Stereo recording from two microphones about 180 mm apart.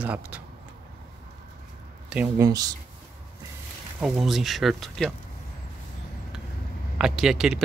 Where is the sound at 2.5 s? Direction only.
20° right (ahead or behind).